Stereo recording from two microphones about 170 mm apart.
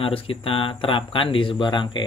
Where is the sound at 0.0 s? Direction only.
30° left (ahead or behind).